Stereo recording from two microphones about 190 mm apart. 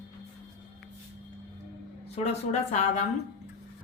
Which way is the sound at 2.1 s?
35° left (ahead or behind).